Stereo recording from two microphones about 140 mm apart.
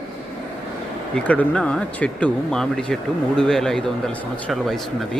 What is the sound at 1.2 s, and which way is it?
Speech, 10° left (ahead or behind).